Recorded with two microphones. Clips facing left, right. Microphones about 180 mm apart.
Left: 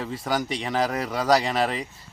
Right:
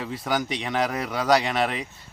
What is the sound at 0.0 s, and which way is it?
Speech, centre (ahead or behind).